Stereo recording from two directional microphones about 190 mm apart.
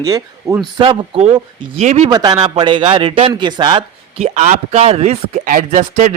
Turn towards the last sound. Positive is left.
turn(degrees=-40)  # may be behind; listen again after turning